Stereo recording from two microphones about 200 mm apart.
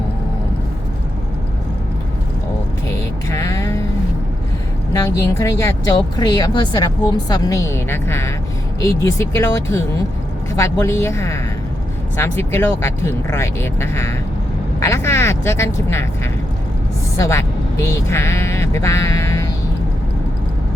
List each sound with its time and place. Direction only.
2.9 s music: 15° left (ahead or behind)
4.9 s speech: 15° left (ahead or behind)
17.2 s speech: 15° left (ahead or behind)